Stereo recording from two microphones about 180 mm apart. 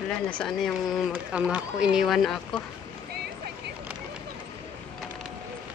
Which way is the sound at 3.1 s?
60° right (ahead or behind).